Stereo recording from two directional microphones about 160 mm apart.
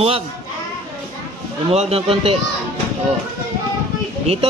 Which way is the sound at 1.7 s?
40° right (ahead or behind).